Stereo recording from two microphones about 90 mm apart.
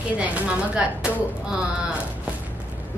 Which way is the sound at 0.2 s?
15° right (ahead or behind).